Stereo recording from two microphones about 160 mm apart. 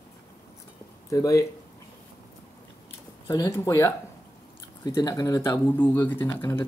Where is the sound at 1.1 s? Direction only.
20° left (ahead or behind).